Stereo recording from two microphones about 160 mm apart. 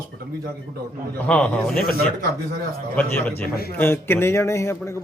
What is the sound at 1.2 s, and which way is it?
Speech, 5° left (ahead or behind).